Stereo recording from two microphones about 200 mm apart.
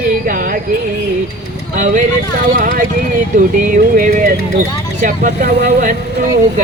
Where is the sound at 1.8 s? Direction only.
40° right (ahead or behind).